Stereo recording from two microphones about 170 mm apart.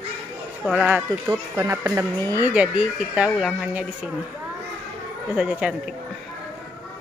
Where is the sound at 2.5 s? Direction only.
5° right (ahead or behind).